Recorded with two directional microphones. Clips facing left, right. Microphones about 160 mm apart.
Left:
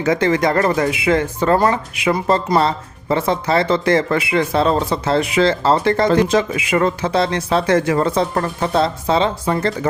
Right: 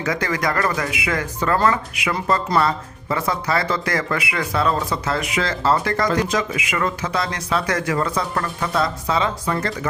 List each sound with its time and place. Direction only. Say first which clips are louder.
0.0 s speech: left 7 dB; 25° left (ahead or behind)